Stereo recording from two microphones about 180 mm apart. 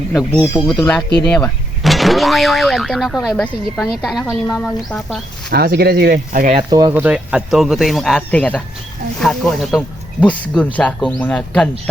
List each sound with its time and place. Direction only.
0.1 s speech: centre (ahead or behind)
5.5 s speech: 60° right (ahead or behind)
6.6 s speech: 25° right (ahead or behind)
6.9 s speech: 10° right (ahead or behind)